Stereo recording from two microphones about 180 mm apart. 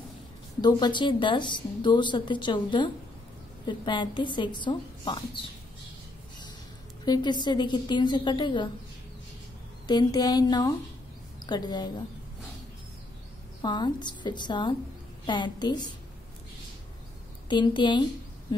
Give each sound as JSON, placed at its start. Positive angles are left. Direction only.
{"t": 0.6, "sound": "a woman's voice", "side_deg": 25}
{"t": 7.1, "sound": "a woman's voice", "side_deg": 25}
{"t": 9.8, "sound": "a woman's voice", "side_deg": 20}
{"t": 13.6, "sound": "a woman's voice", "side_deg": 25}
{"t": 17.5, "sound": "a woman's voice", "side_deg": 25}